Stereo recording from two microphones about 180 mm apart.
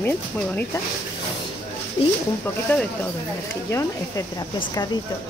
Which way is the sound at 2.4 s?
10° left (ahead or behind).